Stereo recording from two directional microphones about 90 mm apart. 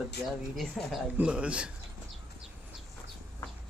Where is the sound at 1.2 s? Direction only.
15° right (ahead or behind).